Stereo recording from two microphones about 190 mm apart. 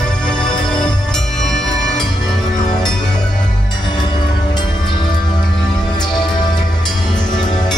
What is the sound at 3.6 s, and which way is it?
Music, 25° left (ahead or behind).